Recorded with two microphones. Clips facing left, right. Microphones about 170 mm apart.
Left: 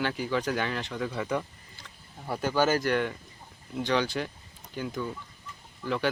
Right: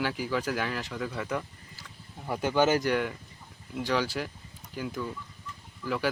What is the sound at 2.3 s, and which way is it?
Speech, 15° right (ahead or behind).